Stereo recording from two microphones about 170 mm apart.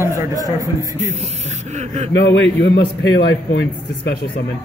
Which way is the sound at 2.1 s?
90° left.